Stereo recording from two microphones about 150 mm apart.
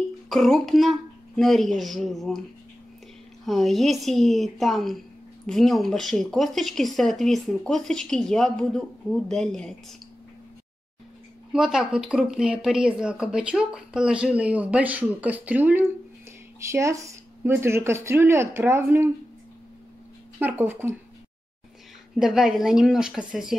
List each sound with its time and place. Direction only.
0.3 s speech: centre (ahead or behind)
3.4 s speech: centre (ahead or behind)
11.5 s speech: 5° right (ahead or behind)
20.3 s speech: 15° right (ahead or behind)
22.2 s speech: 5° right (ahead or behind)